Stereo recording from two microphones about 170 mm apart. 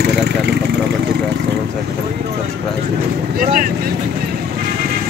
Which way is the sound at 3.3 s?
55° right (ahead or behind).